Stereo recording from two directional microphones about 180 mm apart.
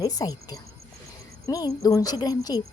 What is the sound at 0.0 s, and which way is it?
Speech, 20° left (ahead or behind).